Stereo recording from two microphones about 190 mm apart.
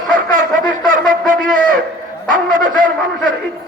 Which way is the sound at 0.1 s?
45° right (ahead or behind).